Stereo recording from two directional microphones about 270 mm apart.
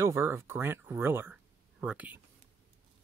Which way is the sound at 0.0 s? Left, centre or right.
Centre.